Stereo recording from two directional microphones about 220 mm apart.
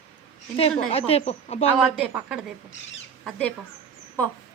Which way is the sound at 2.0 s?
5° right (ahead or behind).